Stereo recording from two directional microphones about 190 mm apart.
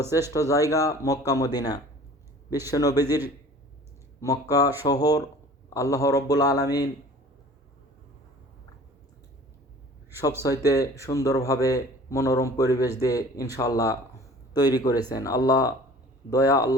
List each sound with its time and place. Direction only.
0.3 s a man's voice: 15° left (ahead or behind)
4.2 s a man's voice: 15° left (ahead or behind)
10.4 s a man's voice: 20° left (ahead or behind)